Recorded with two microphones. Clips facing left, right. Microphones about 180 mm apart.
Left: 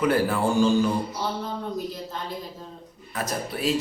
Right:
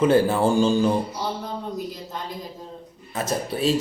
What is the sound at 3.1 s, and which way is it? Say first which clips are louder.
Speech: right 3 dB; 25° right (ahead or behind).